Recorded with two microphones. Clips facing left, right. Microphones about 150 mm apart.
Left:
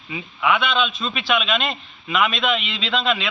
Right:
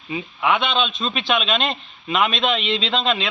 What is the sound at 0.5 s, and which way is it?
A man's voice, 25° right (ahead or behind).